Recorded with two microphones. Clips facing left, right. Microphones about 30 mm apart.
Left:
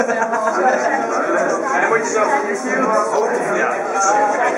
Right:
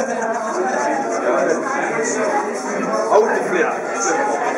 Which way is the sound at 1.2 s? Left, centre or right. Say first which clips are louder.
Even; centre.